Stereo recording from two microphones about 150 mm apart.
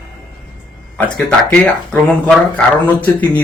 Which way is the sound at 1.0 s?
10° left (ahead or behind).